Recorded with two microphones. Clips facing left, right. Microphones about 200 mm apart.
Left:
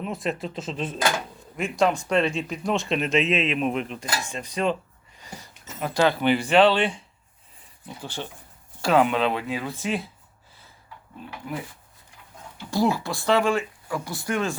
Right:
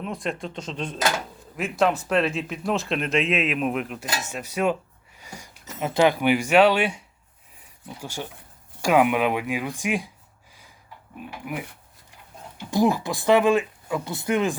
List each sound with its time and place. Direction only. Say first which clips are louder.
0.0 s speech: left 1 dB; centre (ahead or behind); by 10.1 s 15° right (ahead or behind)
11.2 s speech: right 1 dB; 15° right (ahead or behind)